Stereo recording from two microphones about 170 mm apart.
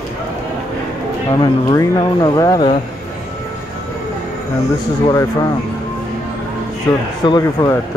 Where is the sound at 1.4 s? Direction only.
25° left (ahead or behind).